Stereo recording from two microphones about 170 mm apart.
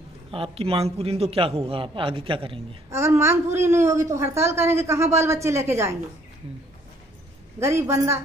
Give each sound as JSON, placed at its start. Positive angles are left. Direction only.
{"t": 0.3, "sound": "a man's voice", "side_deg": -35}
{"t": 2.9, "sound": "a woman's voice", "side_deg": -15}
{"t": 7.5, "sound": "a woman's voice", "side_deg": -15}